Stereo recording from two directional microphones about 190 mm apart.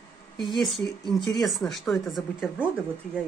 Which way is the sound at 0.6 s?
Centre (ahead or behind).